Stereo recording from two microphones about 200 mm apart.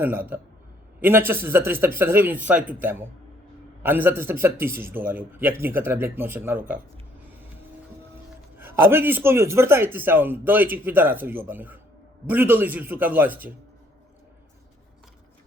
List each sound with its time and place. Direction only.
0.0 s a man's voice: 10° right (ahead or behind)
3.8 s a man's voice: 10° right (ahead or behind)
8.5 s a man's voice: 10° right (ahead or behind)